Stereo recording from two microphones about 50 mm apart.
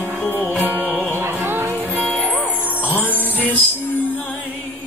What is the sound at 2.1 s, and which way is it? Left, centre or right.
Music, left.